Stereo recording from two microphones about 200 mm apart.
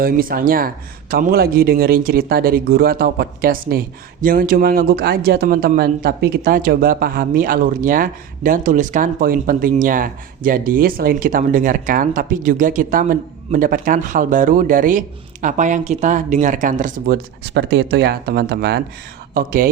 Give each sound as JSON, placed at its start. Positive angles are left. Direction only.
{"t": 0.0, "sound": "speech", "side_deg": -45}